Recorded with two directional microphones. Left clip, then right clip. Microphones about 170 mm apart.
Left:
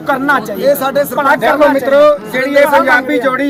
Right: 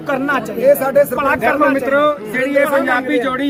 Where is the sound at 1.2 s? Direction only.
5° right (ahead or behind).